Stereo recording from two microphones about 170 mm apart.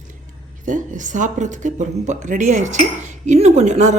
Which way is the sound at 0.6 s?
50° right (ahead or behind).